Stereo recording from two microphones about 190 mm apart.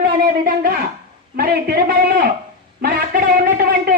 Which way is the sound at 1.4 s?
50° right (ahead or behind).